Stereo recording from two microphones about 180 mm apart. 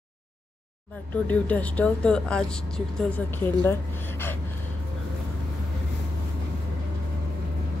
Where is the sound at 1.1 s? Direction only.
10° left (ahead or behind).